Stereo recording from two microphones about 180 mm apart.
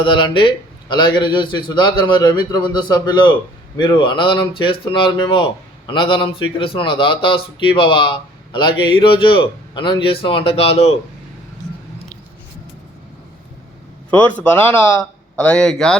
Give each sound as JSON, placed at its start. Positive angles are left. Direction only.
{"t": 0.0, "sound": "speech", "side_deg": 25}
{"t": 14.1, "sound": "a man's voice", "side_deg": 10}